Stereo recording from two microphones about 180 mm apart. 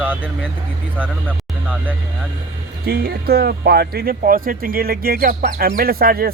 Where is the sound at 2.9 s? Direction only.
60° right (ahead or behind).